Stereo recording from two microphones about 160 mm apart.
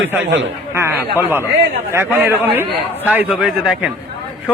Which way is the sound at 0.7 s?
15° right (ahead or behind).